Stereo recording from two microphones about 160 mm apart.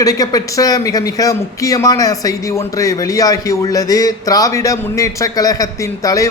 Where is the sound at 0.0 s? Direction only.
20° left (ahead or behind).